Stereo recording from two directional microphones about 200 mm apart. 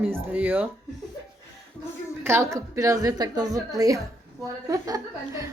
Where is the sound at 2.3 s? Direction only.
15° right (ahead or behind).